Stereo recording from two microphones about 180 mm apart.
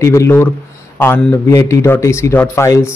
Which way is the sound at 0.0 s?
15° left (ahead or behind).